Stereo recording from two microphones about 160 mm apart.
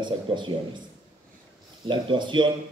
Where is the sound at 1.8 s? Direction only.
30° right (ahead or behind).